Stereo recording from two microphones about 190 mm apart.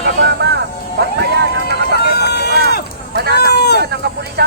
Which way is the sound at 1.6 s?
55° left (ahead or behind).